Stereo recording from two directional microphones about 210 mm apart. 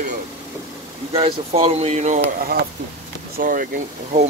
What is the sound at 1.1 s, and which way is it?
Speech, 30° right (ahead or behind).